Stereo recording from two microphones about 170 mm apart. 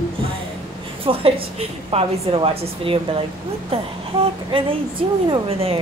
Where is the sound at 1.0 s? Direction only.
35° right (ahead or behind).